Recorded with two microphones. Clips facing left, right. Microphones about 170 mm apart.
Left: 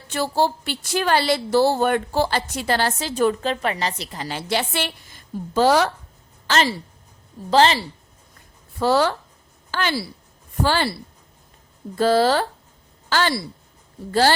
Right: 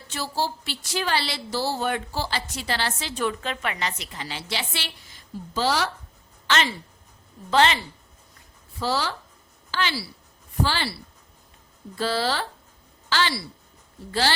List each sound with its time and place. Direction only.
0.1 s a woman's voice: 55° left (ahead or behind)
6.5 s a woman's voice: 35° left (ahead or behind)
8.8 s a woman's voice: 55° left (ahead or behind)
11.9 s a woman's voice: 50° left (ahead or behind)